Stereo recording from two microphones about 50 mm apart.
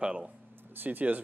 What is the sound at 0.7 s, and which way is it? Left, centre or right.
Speech, right.